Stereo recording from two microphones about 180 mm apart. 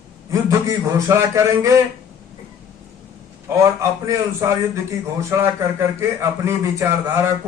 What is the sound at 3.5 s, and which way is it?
A man's voice, 15° right (ahead or behind).